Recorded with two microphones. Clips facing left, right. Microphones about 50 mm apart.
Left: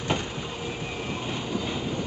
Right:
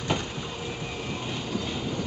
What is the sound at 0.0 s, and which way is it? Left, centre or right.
Vehicle, left.